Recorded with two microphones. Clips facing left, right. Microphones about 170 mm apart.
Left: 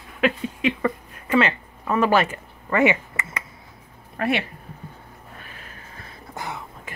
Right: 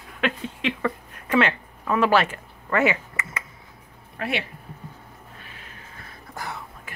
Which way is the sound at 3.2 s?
30° left (ahead or behind).